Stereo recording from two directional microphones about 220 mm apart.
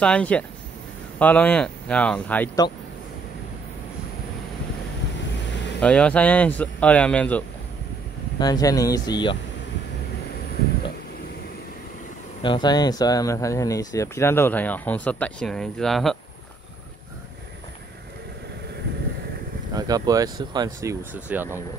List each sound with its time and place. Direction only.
0.0 s speech: 5° left (ahead or behind)
5.8 s speech: 5° left (ahead or behind)
8.4 s speech: 15° left (ahead or behind)
12.4 s speech: 20° left (ahead or behind); by 16.2 s centre (ahead or behind)
19.7 s speech: 15° right (ahead or behind)